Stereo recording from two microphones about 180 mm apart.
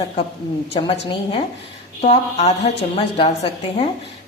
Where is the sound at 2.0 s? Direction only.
35° left (ahead or behind).